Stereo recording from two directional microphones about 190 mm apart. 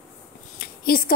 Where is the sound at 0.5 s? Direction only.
50° left (ahead or behind).